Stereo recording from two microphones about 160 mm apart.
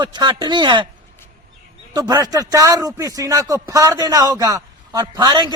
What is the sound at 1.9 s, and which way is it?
A man's voice, 25° right (ahead or behind).